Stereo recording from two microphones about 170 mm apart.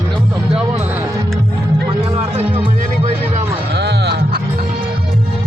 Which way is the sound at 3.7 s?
75° right (ahead or behind).